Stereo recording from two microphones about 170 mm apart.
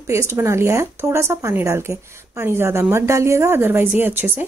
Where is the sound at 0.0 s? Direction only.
15° right (ahead or behind).